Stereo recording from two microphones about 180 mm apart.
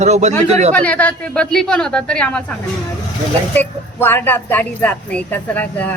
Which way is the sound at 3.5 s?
10° left (ahead or behind).